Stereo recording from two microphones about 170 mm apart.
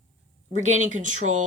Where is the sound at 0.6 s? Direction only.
45° right (ahead or behind).